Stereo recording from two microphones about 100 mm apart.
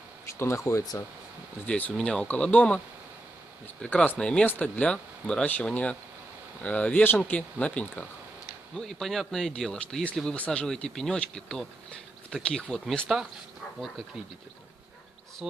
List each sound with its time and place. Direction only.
0.4 s speech: 25° left (ahead or behind)
1.7 s speech: 10° left (ahead or behind)
3.8 s speech: 15° left (ahead or behind)
8.7 s speech: 5° left (ahead or behind)
13.1 s speech: 5° right (ahead or behind)